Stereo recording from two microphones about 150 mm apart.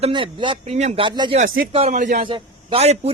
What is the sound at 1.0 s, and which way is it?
Speech, 30° right (ahead or behind).